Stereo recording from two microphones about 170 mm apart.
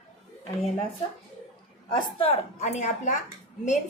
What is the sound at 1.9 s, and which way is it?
A woman's voice, 35° left (ahead or behind).